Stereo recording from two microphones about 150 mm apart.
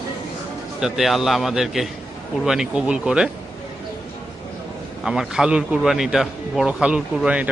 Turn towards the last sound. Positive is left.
turn(degrees=-10)  # may be behind; listen again after turning